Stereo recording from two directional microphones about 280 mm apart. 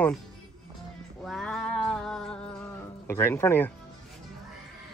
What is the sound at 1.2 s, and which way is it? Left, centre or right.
Cat, centre.